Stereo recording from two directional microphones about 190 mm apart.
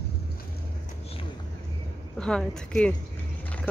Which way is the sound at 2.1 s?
5° left (ahead or behind).